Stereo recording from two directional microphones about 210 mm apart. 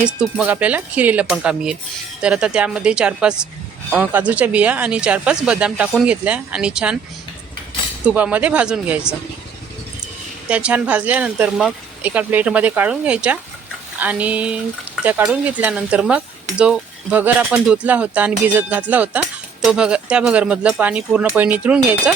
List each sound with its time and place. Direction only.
0.0 s speech: 5° right (ahead or behind)
8.0 s speech: 5° right (ahead or behind)
10.5 s speech: 5° right (ahead or behind)